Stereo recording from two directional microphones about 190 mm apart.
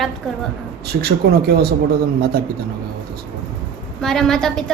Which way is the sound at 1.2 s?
60° right (ahead or behind).